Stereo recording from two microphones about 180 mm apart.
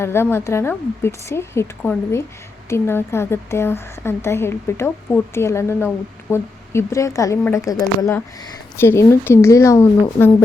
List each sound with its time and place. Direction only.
0.0 s speech: 15° left (ahead or behind)